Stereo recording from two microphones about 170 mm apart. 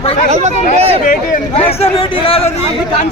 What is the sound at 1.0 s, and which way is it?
Speech, 50° left (ahead or behind).